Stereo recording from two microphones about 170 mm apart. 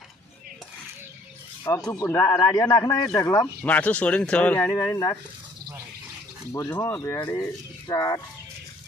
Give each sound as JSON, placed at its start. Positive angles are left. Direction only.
{"t": 1.7, "sound": "speech", "side_deg": 20}
{"t": 4.6, "sound": "speech", "side_deg": 20}
{"t": 6.5, "sound": "speech", "side_deg": 10}